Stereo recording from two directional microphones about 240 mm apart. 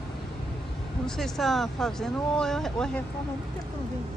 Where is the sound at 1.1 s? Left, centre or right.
Centre.